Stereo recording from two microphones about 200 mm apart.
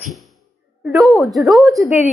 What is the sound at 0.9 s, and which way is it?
Speech, centre (ahead or behind).